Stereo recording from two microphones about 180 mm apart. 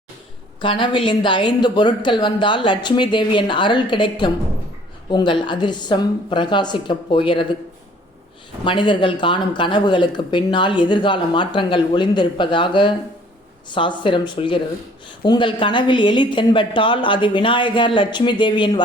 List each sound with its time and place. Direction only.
0.6 s speech: 30° left (ahead or behind)
8.6 s speech: 25° left (ahead or behind)